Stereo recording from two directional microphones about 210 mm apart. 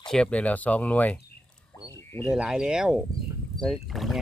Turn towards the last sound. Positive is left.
turn(degrees=0)  # may be behind; listen again after turning